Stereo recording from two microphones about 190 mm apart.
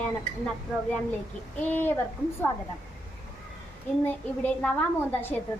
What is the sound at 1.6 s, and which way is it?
Speech, 10° left (ahead or behind).